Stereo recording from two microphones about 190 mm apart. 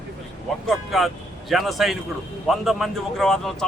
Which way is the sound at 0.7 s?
Centre (ahead or behind).